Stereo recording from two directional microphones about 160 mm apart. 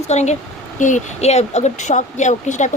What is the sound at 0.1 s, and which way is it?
Speech, 45° left (ahead or behind).